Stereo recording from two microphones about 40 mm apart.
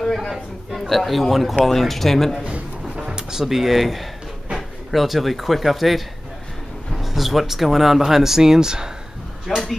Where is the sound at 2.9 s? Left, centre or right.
Centre.